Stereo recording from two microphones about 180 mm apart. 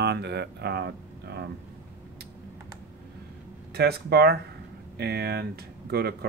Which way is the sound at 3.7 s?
60° right (ahead or behind).